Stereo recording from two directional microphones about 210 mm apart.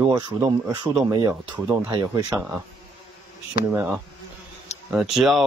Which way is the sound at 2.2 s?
5° right (ahead or behind).